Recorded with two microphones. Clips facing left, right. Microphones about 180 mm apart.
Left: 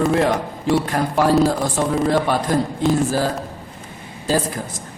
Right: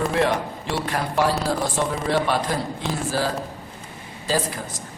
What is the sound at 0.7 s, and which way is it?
A man's voice, 45° left (ahead or behind).